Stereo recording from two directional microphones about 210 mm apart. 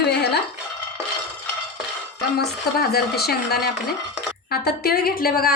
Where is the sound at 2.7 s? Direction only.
45° left (ahead or behind).